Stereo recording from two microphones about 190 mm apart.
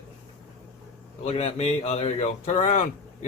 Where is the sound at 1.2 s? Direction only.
35° left (ahead or behind).